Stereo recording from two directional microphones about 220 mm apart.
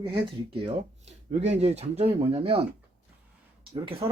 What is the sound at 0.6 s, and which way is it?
Speech, 30° right (ahead or behind).